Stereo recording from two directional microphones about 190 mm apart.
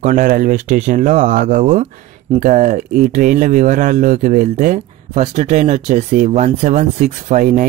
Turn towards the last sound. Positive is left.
turn(degrees=-40)  # may be behind; listen again after turning